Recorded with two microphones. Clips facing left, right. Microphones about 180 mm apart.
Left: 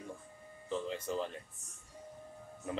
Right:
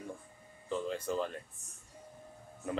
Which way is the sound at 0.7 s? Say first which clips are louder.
Right 2 dB; 20° left (ahead or behind).